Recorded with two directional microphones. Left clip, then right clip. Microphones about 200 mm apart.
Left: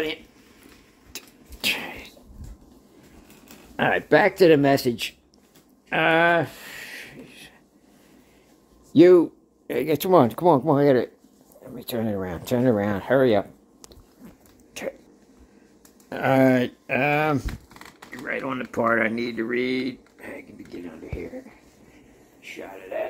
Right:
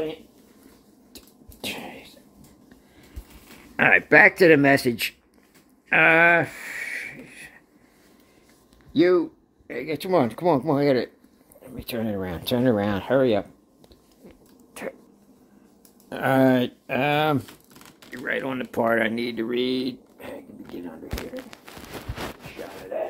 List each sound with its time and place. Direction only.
1.1 s whispering: 20° right (ahead or behind)
3.7 s speech: 5° left (ahead or behind)
5.9 s a sound: 5° left (ahead or behind)
8.9 s speech: 40° left (ahead or behind); by 12.2 s 10° left (ahead or behind)
12.2 s speech: 5° right (ahead or behind)
16.1 s speech: 5° left (ahead or behind)
19.5 s speech: 35° right (ahead or behind)